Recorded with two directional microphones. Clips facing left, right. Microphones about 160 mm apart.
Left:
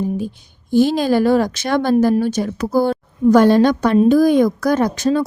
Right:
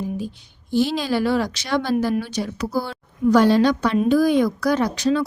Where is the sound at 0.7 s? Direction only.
50° left (ahead or behind).